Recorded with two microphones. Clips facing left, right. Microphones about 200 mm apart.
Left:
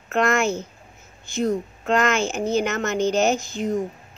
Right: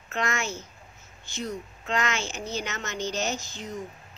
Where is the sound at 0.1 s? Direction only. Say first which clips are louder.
Left 10 dB; 55° left (ahead or behind).